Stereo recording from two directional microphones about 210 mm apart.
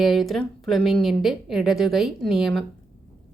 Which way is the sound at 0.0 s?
Centre (ahead or behind).